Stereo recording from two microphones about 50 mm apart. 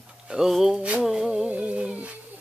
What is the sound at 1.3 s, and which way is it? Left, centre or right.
Music, right.